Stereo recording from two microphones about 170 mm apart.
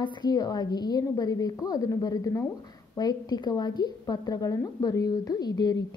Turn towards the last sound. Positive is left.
turn(degrees=25)  # may be behind; listen again after turning